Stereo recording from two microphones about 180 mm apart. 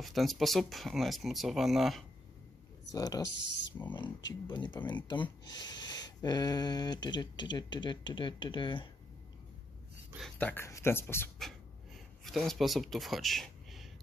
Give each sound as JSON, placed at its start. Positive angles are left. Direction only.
{"t": 0.0, "sound": "speech", "side_deg": 0}
{"t": 2.9, "sound": "speech", "side_deg": 20}
{"t": 3.3, "sound": "speech", "side_deg": 75}
{"t": 4.3, "sound": "speech", "side_deg": 25}
{"t": 10.1, "sound": "speech", "side_deg": 5}
{"t": 11.4, "sound": "a sound", "side_deg": 0}
{"t": 12.3, "sound": "speech", "side_deg": 0}